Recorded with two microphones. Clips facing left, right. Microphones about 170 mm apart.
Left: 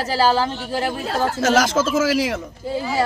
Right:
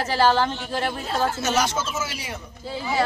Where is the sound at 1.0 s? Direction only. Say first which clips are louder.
Left 4 dB; 90° left.